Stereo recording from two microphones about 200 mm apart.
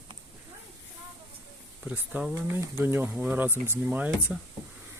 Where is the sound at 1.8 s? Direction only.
10° right (ahead or behind).